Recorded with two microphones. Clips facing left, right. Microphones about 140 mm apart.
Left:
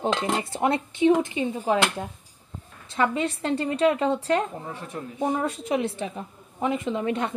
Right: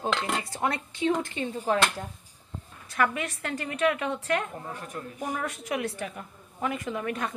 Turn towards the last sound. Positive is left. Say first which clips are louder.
# left 5 dB
turn(degrees=25)  # may be behind; listen again after turning